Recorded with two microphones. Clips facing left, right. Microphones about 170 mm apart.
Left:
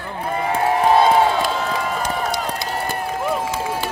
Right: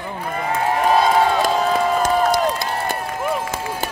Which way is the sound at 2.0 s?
50° right (ahead or behind).